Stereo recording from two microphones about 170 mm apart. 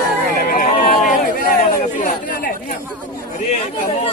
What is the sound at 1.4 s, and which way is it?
Chatter, 60° left (ahead or behind).